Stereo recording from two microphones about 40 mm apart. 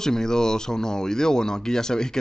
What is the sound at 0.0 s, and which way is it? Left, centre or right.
Speech, centre.